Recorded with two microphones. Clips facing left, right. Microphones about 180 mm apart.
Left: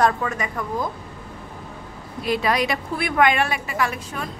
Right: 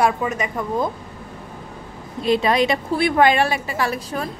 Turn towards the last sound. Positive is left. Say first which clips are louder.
# right 2 dB
turn(degrees=-35)  # may be behind; listen again after turning